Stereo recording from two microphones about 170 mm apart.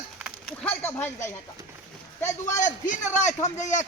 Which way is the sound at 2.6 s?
50° left (ahead or behind).